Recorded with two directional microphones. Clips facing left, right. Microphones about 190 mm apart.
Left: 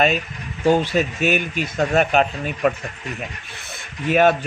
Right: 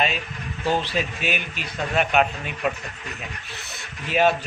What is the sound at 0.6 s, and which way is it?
Speech, 50° left (ahead or behind).